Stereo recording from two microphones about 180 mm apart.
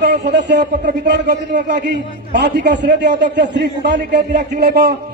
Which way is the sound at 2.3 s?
70° right (ahead or behind).